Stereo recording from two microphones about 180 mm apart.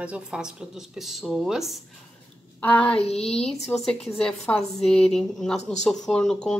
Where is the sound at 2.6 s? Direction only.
10° left (ahead or behind).